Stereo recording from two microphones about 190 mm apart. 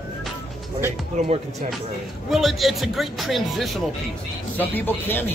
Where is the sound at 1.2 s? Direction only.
35° right (ahead or behind).